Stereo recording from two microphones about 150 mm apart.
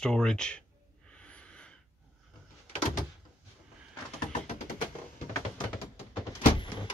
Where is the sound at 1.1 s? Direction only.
10° left (ahead or behind).